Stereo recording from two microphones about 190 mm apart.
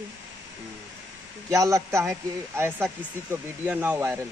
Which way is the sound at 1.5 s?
15° right (ahead or behind).